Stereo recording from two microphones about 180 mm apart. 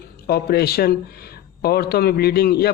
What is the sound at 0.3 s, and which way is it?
A man's voice, 60° left (ahead or behind).